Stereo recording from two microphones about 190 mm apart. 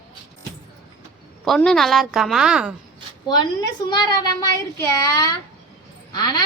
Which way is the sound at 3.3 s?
20° left (ahead or behind).